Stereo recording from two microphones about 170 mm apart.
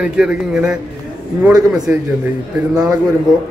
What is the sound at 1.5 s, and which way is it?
Speech, 20° right (ahead or behind).